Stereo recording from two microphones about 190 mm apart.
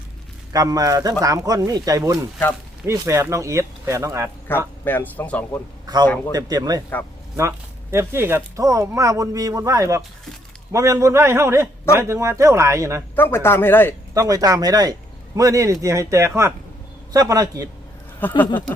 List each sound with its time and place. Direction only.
0.5 s speech: 20° right (ahead or behind)
4.4 s a man's voice: 10° left (ahead or behind)
5.8 s a man's voice: 20° right (ahead or behind)
13.1 s a man's voice: 10° left (ahead or behind)
14.1 s speech: 20° right (ahead or behind)
18.2 s a man's voice: 10° left (ahead or behind)